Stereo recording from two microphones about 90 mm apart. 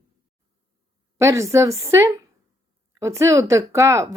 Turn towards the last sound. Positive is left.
turn(degrees=-35)  # may be behind; listen again after turning